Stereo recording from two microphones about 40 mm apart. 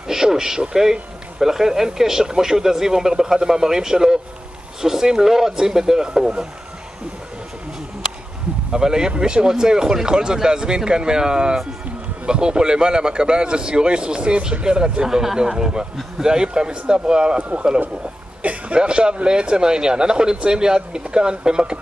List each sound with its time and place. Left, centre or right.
0.1 s speech: centre
8.7 s a man's voice: centre
18.4 s a sound: right
18.8 s a man's voice: right